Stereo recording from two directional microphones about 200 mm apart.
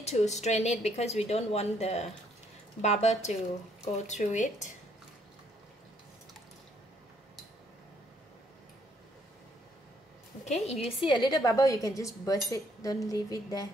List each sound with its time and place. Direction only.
0.0 s a woman's voice: 35° left (ahead or behind)
10.4 s a woman's voice: 35° left (ahead or behind)
11.1 s a woman's voice: 20° left (ahead or behind)